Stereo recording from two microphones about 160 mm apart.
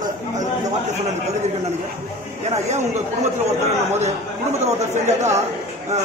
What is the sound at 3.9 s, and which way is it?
Speech, 45° right (ahead or behind).